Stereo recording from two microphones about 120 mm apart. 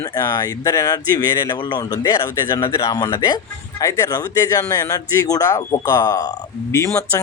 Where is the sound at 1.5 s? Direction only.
40° left (ahead or behind).